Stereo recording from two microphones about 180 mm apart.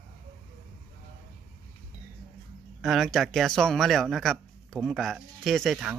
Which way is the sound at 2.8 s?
Centre (ahead or behind).